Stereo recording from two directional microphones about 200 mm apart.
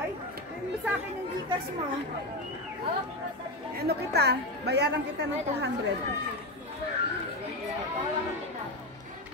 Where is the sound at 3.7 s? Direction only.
50° right (ahead or behind).